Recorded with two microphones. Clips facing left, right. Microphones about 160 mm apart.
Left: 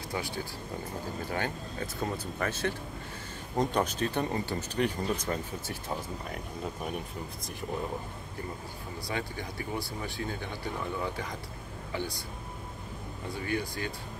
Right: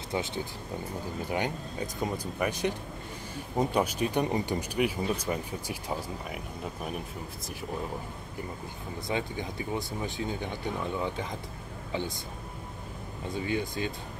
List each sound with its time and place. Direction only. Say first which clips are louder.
0.1 s speech: right 4 dB; 20° right (ahead or behind); by 7.0 s 5° right (ahead or behind)
9.0 s speech: right 4 dB; 20° right (ahead or behind)
13.3 s speech: right 2 dB; 20° right (ahead or behind)